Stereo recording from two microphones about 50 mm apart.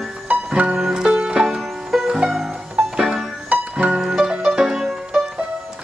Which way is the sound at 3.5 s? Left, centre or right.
Right.